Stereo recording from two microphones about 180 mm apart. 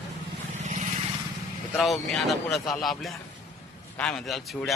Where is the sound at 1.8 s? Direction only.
Centre (ahead or behind).